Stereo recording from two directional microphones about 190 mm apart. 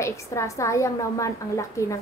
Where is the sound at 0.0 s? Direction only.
15° left (ahead or behind).